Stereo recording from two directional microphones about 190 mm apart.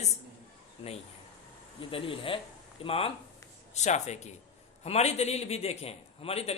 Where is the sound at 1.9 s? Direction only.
30° left (ahead or behind).